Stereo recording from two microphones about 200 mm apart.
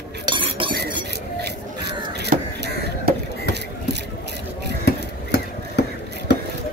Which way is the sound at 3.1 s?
45° right (ahead or behind).